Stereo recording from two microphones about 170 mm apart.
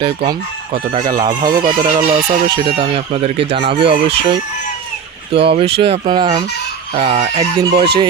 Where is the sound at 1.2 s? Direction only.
25° right (ahead or behind).